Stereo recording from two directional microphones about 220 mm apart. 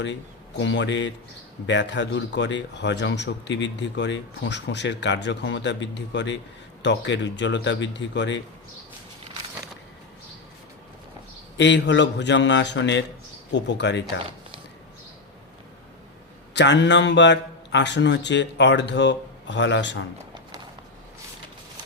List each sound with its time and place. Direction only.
0.6 s a man's voice: 55° left (ahead or behind)
11.5 s a man's voice: 55° left (ahead or behind)
16.6 s a man's voice: 55° left (ahead or behind)